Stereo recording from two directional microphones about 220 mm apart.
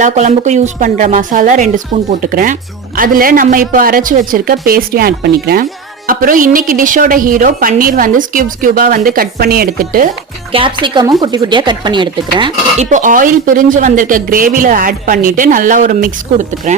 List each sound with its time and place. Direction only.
0.0 s a woman's voice: 35° right (ahead or behind)
10.5 s speech: 25° right (ahead or behind)
12.9 s a woman's voice: 35° right (ahead or behind)